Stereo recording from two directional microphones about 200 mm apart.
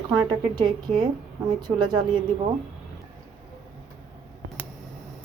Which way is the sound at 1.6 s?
20° right (ahead or behind).